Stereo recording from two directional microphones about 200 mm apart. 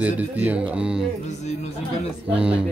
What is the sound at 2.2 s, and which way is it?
Speech, 5° right (ahead or behind).